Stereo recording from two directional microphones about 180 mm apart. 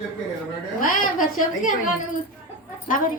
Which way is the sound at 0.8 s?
50° left (ahead or behind).